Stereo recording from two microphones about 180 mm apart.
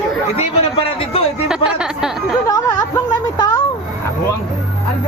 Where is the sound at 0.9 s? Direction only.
30° left (ahead or behind).